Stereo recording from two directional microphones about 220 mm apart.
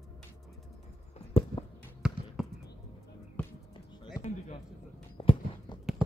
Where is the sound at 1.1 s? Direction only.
25° left (ahead or behind).